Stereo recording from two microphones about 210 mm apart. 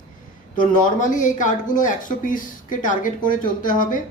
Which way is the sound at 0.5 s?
40° left (ahead or behind).